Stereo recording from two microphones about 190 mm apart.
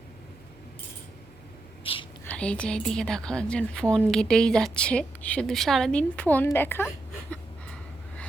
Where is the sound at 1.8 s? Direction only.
30° left (ahead or behind).